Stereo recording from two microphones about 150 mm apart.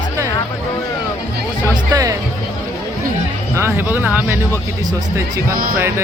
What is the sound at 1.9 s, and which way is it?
Music, 25° right (ahead or behind).